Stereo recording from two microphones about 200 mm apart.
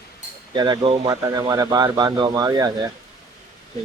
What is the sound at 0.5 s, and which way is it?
Speech, 20° right (ahead or behind).